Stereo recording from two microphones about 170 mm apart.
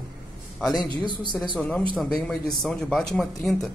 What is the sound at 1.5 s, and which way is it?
A man's voice, 5° left (ahead or behind).